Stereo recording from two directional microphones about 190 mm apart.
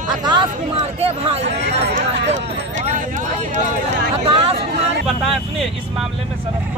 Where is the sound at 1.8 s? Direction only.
65° right (ahead or behind).